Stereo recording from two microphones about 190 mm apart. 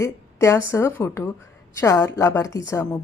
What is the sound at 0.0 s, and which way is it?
Speech, 15° left (ahead or behind).